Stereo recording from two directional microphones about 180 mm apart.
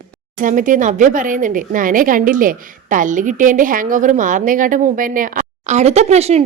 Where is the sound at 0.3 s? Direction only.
45° right (ahead or behind).